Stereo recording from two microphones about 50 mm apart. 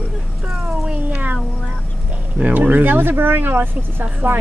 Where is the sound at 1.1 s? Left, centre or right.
Right.